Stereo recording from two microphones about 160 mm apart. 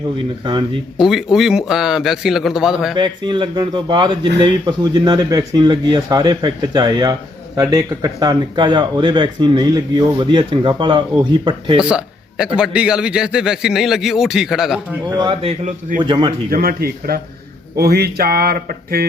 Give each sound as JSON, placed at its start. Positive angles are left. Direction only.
{"t": 0.2, "sound": "speech", "side_deg": -30}
{"t": 0.9, "sound": "a man's voice", "side_deg": -5}
{"t": 2.9, "sound": "speech", "side_deg": -30}
{"t": 11.8, "sound": "a man's voice", "side_deg": -5}
{"t": 15.1, "sound": "speech", "side_deg": -30}
{"t": 16.5, "sound": "speech", "side_deg": -70}